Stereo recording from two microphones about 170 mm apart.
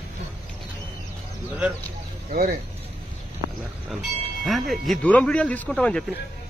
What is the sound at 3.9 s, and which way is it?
Speech, centre (ahead or behind).